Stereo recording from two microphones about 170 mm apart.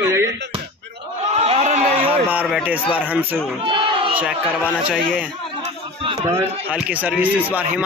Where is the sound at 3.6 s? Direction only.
30° right (ahead or behind).